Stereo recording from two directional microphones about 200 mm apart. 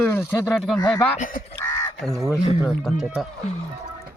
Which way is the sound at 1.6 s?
20° left (ahead or behind).